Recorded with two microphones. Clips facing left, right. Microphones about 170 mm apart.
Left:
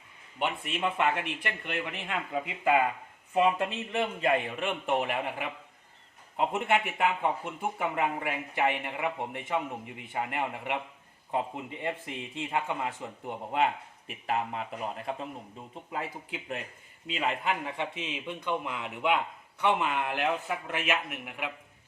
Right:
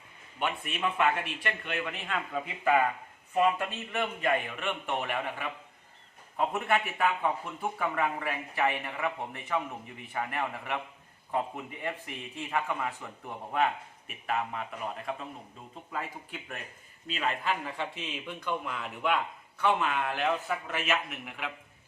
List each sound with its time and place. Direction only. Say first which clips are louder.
0.3 s a man's voice: left 1 dB; 20° left (ahead or behind)
3.3 s a man's voice: left 1 dB; 30° left (ahead or behind); by 21.5 s 10° left (ahead or behind)